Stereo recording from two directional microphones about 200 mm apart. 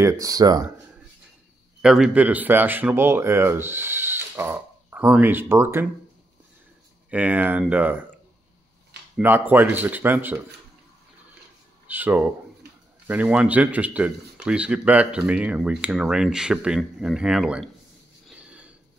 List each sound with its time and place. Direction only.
0.0 s speech: 15° right (ahead or behind)
1.8 s speech: centre (ahead or behind)
7.1 s speech: 5° right (ahead or behind)
9.1 s speech: 10° right (ahead or behind)
11.9 s speech: 10° right (ahead or behind)
18.3 s a sound: 5° right (ahead or behind)